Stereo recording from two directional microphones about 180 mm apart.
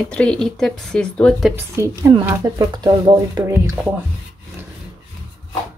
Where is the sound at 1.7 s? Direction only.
15° right (ahead or behind).